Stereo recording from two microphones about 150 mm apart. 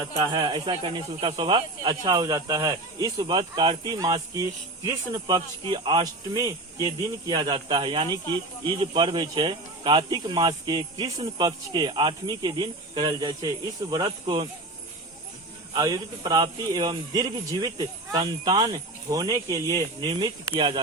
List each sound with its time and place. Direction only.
0.2 s speech: 30° right (ahead or behind)
5.7 s speech: 30° right (ahead or behind)
15.7 s speech: 25° right (ahead or behind)